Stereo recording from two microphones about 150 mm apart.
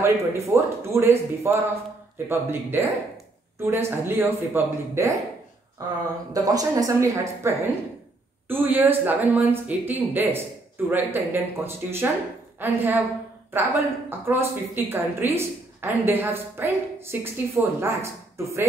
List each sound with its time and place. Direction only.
0.0 s a woman's voice: 20° right (ahead or behind)
6.3 s a woman's voice: 25° right (ahead or behind)